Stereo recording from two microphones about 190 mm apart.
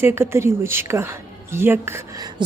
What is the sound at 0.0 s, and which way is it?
A woman's voice, 15° right (ahead or behind).